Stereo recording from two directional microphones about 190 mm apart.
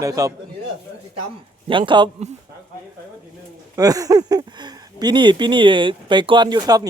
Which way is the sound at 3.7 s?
20° right (ahead or behind).